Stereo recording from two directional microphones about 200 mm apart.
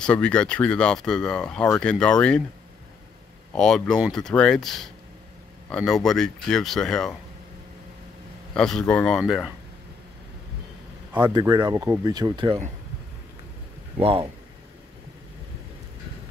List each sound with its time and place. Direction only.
0.0 s speech: 5° left (ahead or behind)
3.5 s speech: 5° left (ahead or behind)
8.5 s speech: 5° left (ahead or behind)
11.1 s speech: 20° right (ahead or behind)
13.9 s speech: 30° right (ahead or behind)